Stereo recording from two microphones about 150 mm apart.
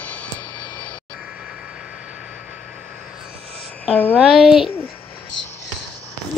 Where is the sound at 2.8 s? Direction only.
Centre (ahead or behind).